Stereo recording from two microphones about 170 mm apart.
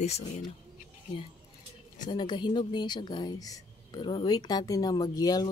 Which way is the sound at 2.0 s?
25° left (ahead or behind).